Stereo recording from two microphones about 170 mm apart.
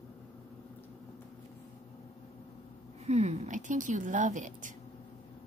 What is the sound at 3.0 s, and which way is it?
Speech, 40° right (ahead or behind).